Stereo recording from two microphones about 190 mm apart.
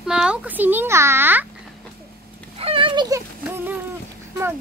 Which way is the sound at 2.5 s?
30° right (ahead or behind).